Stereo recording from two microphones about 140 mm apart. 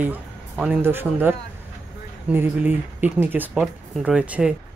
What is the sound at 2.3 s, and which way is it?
Speech, 15° right (ahead or behind).